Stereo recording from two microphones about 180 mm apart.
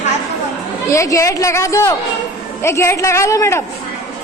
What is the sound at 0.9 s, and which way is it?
A woman's voice, 15° left (ahead or behind).